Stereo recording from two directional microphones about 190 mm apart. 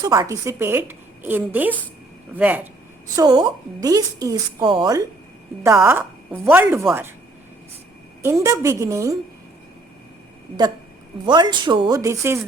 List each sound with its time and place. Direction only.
0.0 s a woman's voice: 20° right (ahead or behind)
3.2 s a woman's voice: 20° right (ahead or behind)
8.2 s a woman's voice: 15° right (ahead or behind)
11.3 s a woman's voice: 20° right (ahead or behind)